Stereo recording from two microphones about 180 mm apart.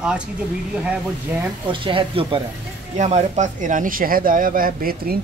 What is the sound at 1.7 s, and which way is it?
Speech, 30° right (ahead or behind).